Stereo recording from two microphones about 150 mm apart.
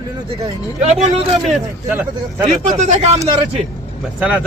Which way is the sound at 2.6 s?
50° right (ahead or behind).